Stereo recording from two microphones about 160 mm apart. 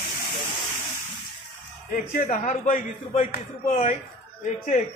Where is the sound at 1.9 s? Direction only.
55° left (ahead or behind).